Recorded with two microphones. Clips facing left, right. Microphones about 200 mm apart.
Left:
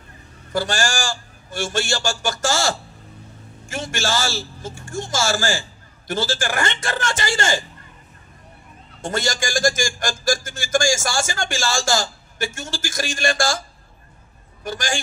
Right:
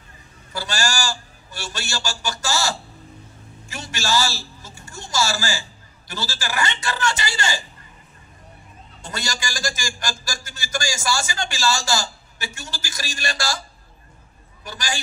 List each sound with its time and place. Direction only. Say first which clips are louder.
0.5 s a man's voice: left 4 dB; 50° left (ahead or behind)
9.0 s a man's voice: left 7 dB; 50° left (ahead or behind)